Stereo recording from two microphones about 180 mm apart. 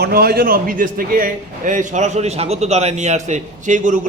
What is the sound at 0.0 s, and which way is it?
A man's voice, 60° right (ahead or behind).